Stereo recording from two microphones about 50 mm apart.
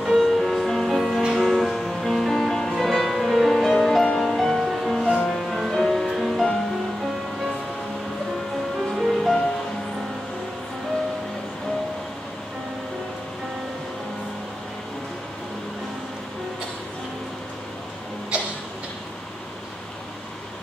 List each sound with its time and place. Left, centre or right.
0.0 s music: centre
8.7 s music: centre